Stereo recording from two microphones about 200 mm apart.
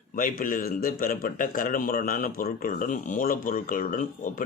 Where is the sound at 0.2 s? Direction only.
45° left (ahead or behind).